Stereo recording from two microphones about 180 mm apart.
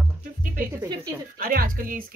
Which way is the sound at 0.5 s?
20° right (ahead or behind).